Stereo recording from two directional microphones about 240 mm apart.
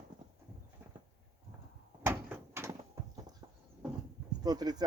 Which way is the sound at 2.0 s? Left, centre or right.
Centre.